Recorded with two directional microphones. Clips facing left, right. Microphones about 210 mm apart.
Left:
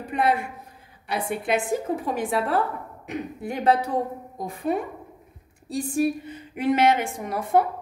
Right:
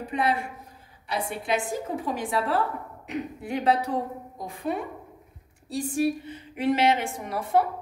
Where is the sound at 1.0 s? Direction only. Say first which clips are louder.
Left 3 dB; 55° left (ahead or behind).